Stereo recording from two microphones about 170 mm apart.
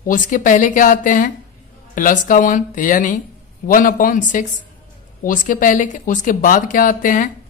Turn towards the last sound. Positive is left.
turn(degrees=50)  # may be behind; listen again after turning